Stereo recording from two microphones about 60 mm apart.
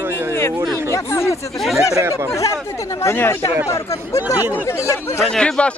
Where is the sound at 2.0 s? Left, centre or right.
Right.